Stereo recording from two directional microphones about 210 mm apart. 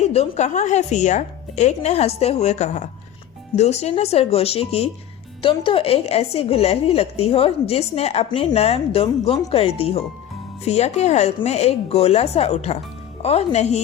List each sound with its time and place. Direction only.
0.0 s a woman's voice: 30° left (ahead or behind)